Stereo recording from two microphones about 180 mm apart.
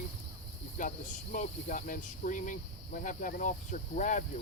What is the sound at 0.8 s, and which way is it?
Cricket, 45° left (ahead or behind).